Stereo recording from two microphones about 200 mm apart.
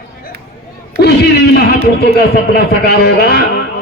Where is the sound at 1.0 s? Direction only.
55° left (ahead or behind).